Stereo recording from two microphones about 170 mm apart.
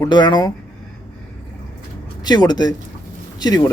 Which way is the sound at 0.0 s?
25° left (ahead or behind).